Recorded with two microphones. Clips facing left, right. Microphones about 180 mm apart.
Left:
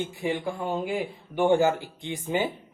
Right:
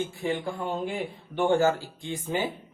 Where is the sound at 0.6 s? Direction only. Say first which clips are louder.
Left 3 dB; 10° left (ahead or behind).